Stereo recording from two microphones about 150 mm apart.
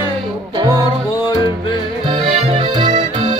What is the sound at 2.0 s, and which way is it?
Accordion, 35° right (ahead or behind).